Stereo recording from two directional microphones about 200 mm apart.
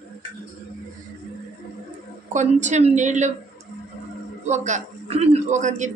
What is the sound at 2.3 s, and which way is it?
Speech, 35° right (ahead or behind).